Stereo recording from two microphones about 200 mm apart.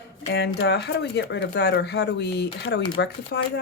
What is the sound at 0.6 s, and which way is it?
Speech, 60° left (ahead or behind).